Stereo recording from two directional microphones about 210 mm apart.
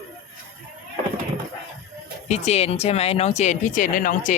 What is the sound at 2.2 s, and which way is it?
Speech, 30° left (ahead or behind).